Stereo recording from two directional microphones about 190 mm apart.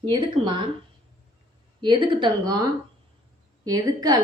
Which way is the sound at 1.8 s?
25° right (ahead or behind).